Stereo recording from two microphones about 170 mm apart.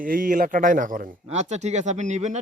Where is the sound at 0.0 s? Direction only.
55° right (ahead or behind).